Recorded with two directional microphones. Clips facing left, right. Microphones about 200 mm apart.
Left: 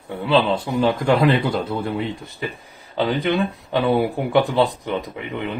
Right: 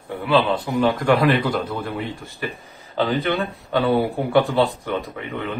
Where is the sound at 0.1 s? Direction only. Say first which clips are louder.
Left 1 dB; 25° left (ahead or behind).